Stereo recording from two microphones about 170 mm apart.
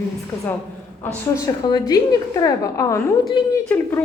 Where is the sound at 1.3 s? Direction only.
20° left (ahead or behind).